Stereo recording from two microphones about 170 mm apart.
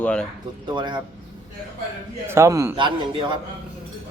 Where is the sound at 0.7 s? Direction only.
25° right (ahead or behind).